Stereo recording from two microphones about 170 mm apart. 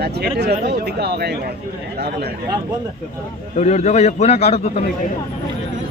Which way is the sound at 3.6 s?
45° left (ahead or behind).